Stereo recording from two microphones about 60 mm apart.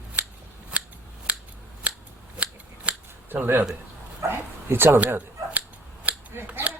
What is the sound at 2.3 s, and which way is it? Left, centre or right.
Scissors, right.